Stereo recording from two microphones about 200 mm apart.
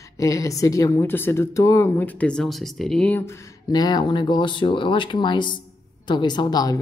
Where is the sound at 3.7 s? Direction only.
20° left (ahead or behind).